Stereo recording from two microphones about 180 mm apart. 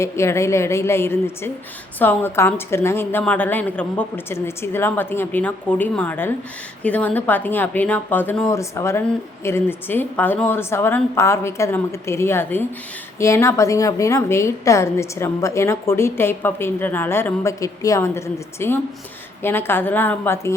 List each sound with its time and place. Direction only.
0.0 s speech: 15° left (ahead or behind)